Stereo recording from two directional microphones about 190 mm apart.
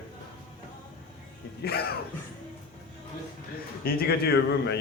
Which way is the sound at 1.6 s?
55° left (ahead or behind).